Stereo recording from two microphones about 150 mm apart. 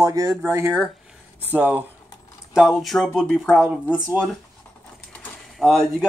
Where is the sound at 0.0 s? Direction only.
20° right (ahead or behind).